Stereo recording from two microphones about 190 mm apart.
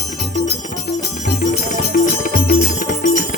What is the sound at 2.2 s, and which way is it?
Music, 50° left (ahead or behind).